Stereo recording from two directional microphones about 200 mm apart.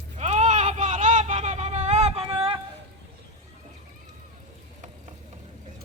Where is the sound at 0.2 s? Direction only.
35° right (ahead or behind).